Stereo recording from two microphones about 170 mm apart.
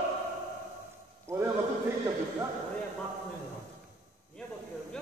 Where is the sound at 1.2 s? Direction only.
15° right (ahead or behind).